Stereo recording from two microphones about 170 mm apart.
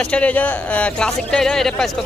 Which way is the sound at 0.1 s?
10° left (ahead or behind).